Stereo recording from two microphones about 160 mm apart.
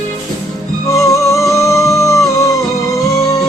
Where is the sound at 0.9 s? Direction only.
20° left (ahead or behind).